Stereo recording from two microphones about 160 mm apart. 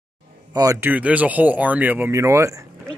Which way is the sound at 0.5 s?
20° right (ahead or behind).